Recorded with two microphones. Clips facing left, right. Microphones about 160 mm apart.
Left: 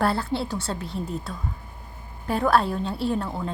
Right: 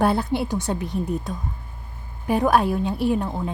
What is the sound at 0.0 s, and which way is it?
A woman's voice, 20° right (ahead or behind).